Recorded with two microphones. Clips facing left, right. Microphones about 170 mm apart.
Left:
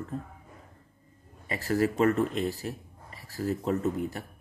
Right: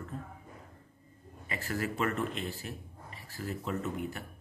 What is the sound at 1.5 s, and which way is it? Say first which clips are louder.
Speech: left 8 dB; 40° left (ahead or behind).